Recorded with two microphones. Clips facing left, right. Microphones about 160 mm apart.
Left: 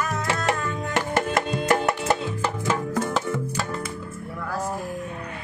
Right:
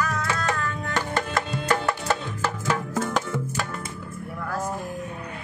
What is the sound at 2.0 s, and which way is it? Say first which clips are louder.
Music: left 2 dB; 10° left (ahead or behind).